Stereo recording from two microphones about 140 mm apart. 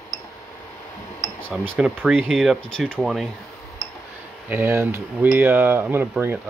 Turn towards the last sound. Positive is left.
turn(degrees=-15)  # may be behind; listen again after turning